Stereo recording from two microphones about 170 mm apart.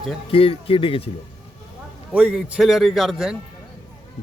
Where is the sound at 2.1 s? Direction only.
5° right (ahead or behind).